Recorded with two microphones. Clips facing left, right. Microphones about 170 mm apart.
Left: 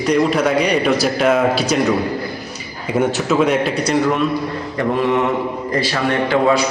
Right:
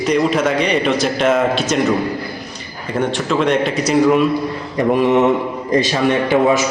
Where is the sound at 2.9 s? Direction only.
5° left (ahead or behind).